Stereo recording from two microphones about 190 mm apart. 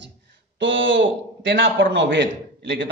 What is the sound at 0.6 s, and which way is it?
A man's voice, 75° right (ahead or behind).